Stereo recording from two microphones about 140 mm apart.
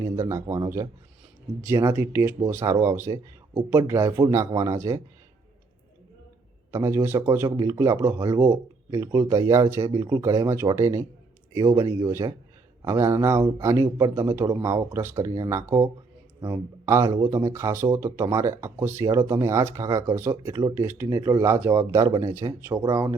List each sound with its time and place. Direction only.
0.0 s speech: 20° right (ahead or behind)
6.7 s speech: 20° right (ahead or behind)